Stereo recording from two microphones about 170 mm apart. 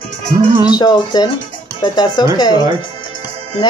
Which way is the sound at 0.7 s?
25° left (ahead or behind).